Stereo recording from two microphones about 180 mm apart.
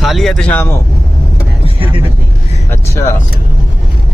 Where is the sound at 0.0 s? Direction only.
Centre (ahead or behind).